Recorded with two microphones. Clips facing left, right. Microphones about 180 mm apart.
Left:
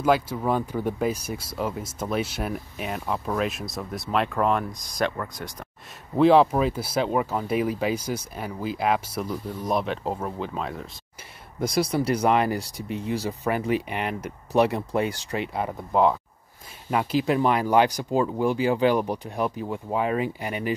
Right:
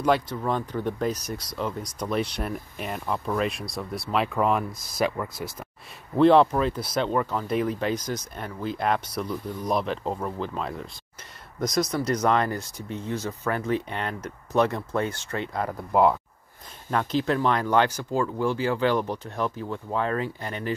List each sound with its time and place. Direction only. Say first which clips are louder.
0.0 s speech: left 1 dB; 5° left (ahead or behind)
13.2 s speech: left 2 dB; 35° left (ahead or behind)
13.5 s speech: left 2 dB; 10° left (ahead or behind)
16.9 s speech: left 2 dB; 10° left (ahead or behind)